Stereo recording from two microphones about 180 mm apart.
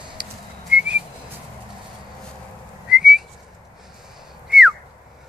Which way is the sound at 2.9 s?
5° right (ahead or behind).